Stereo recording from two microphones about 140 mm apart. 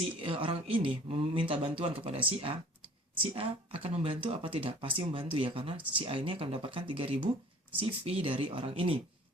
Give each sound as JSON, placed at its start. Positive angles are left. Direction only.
{"t": 0.2, "sound": "speech", "side_deg": -40}